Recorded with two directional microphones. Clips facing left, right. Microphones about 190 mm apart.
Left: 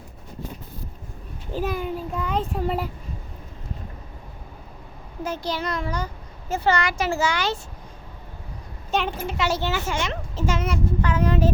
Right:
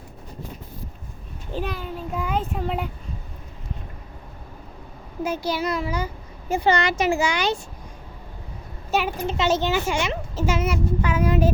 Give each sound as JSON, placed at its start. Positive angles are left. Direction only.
{"t": 1.5, "sound": "a child's voice", "side_deg": 10}
{"t": 2.1, "sound": "speech", "side_deg": -10}
{"t": 5.2, "sound": "a child's voice", "side_deg": -10}
{"t": 8.9, "sound": "a child's voice", "side_deg": -5}
{"t": 9.2, "sound": "a child's voice", "side_deg": -20}